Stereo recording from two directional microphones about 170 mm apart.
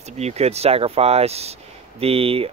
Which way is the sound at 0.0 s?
40° right (ahead or behind).